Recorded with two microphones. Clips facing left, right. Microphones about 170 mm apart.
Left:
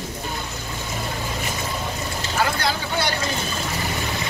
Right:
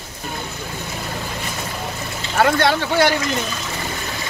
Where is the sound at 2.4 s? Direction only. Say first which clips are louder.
Right 8 dB; 70° right (ahead or behind).